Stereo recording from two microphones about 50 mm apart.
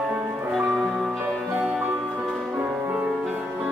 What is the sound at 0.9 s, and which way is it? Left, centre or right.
Music, centre.